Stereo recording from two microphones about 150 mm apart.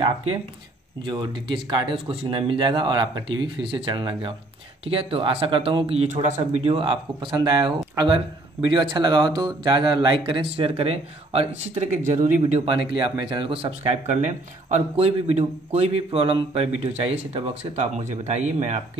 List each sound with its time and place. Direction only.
1.0 s speech: 30° right (ahead or behind); by 18.4 s 50° right (ahead or behind)